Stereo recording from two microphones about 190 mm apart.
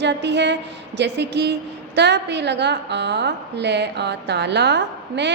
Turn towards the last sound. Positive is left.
turn(degrees=-65)  # may be behind; listen again after turning